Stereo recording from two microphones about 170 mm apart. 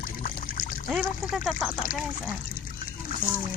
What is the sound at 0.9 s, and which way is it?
Speech, centre (ahead or behind).